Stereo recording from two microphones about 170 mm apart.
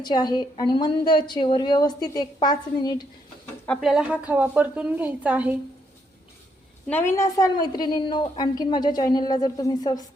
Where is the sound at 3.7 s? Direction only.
Centre (ahead or behind).